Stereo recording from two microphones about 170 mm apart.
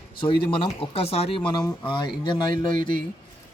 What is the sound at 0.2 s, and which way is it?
Speech, 30° left (ahead or behind).